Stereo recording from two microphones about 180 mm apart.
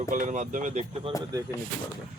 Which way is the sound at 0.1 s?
45° right (ahead or behind).